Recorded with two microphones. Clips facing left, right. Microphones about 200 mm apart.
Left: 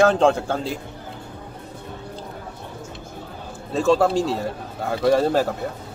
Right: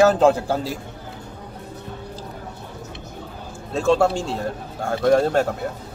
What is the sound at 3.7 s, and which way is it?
Speech, centre (ahead or behind).